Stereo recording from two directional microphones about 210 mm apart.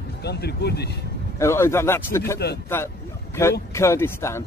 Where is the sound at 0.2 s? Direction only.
50° left (ahead or behind).